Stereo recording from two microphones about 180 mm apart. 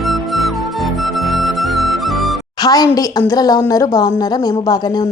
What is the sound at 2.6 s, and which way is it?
A woman's voice, 20° left (ahead or behind).